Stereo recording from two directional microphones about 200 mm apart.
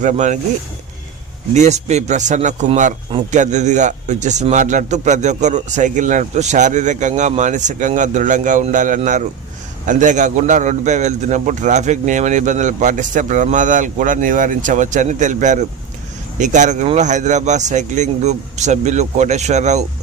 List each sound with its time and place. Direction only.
0.0 s a man's voice: 35° right (ahead or behind)
1.5 s a man's voice: 35° right (ahead or behind)